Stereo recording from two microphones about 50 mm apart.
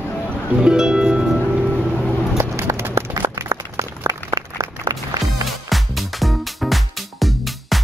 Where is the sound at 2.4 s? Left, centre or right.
Right.